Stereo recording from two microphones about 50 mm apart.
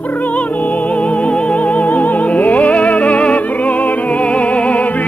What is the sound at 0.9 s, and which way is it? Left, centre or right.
Music, left.